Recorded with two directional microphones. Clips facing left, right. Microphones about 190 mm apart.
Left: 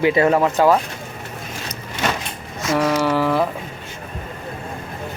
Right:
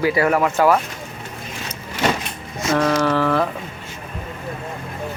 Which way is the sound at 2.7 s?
10° left (ahead or behind).